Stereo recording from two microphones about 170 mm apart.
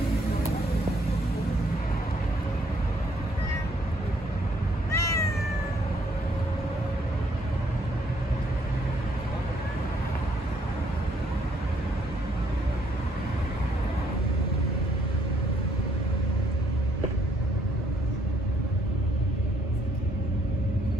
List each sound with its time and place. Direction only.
4.9 s cat: 20° left (ahead or behind)